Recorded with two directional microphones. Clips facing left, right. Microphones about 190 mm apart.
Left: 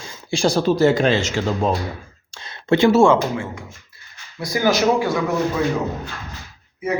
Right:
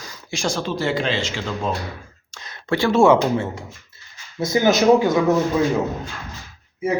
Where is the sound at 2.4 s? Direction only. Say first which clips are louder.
Left 5 dB; 25° left (ahead or behind).